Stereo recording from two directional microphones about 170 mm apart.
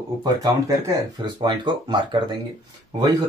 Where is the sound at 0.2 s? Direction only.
20° right (ahead or behind).